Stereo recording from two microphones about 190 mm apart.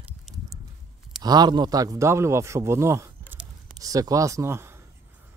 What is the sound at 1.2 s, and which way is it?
A man's voice, 20° right (ahead or behind).